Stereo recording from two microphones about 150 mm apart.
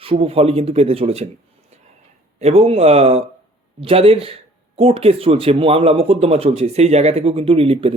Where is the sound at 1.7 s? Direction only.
45° right (ahead or behind).